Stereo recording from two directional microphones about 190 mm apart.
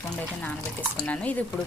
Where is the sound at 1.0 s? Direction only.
5° left (ahead or behind).